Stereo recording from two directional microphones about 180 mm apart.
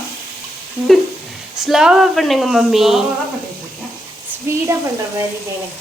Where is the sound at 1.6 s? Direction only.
Centre (ahead or behind).